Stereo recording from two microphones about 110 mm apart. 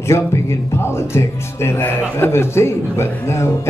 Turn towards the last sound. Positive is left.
turn(degrees=25)  # may be behind; listen again after turning